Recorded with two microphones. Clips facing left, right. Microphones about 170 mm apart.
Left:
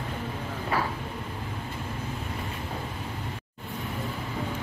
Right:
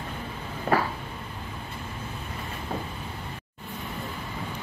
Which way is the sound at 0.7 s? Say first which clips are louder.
Right 4 dB; 50° right (ahead or behind).